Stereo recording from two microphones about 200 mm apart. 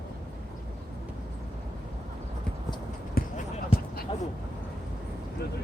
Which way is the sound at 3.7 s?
25° left (ahead or behind).